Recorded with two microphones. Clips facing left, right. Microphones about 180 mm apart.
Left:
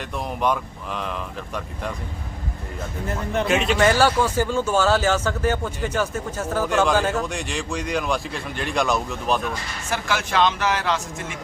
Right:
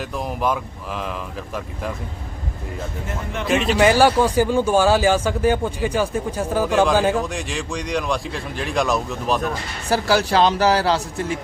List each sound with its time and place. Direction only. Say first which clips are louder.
0.0 s speech: right 1 dB; centre (ahead or behind)
3.4 s speech: right 3 dB; centre (ahead or behind)
3.8 s speech: right 5 dB; 15° right (ahead or behind)
7.2 s speech: right 2 dB; centre (ahead or behind)
9.9 s speech: right 6 dB; 35° right (ahead or behind)